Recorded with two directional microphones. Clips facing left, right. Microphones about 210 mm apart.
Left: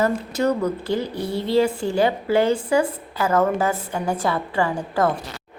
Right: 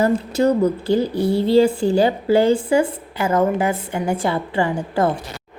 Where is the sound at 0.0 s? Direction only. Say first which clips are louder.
Right 4 dB; 30° right (ahead or behind).